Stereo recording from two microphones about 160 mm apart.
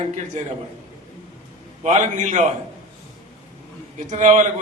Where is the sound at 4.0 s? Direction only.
50° right (ahead or behind).